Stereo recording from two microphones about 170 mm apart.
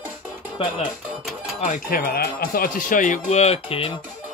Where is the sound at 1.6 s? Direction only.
50° left (ahead or behind); by 3.9 s 35° left (ahead or behind).